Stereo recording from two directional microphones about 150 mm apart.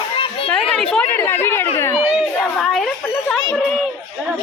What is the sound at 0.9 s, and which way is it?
Speech, 15° left (ahead or behind).